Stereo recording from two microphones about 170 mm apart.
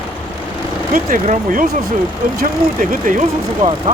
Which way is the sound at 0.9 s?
50° right (ahead or behind).